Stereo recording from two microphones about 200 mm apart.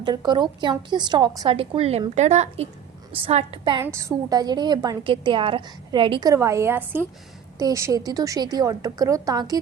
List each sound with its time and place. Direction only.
0.0 s a woman's voice: 20° right (ahead or behind)
3.8 s a woman's voice: 15° right (ahead or behind)